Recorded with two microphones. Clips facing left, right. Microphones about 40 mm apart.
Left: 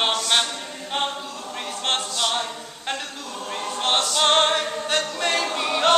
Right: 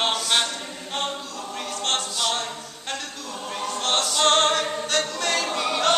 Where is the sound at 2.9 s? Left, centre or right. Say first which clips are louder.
Left 2 dB; centre.